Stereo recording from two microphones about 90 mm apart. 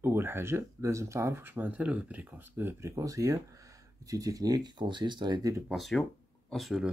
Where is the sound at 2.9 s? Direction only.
35° right (ahead or behind); by 5.5 s 50° right (ahead or behind).